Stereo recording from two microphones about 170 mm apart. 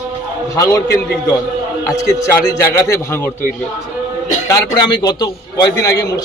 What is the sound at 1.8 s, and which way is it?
A man's voice, 15° left (ahead or behind).